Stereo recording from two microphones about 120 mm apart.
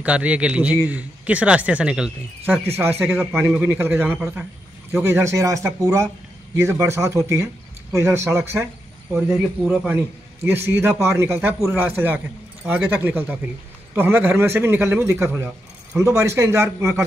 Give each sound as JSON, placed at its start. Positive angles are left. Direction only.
{"t": 0.0, "sound": "speech", "side_deg": -10}
{"t": 2.5, "sound": "a man's voice", "side_deg": -20}
{"t": 9.9, "sound": "a man's voice", "side_deg": -20}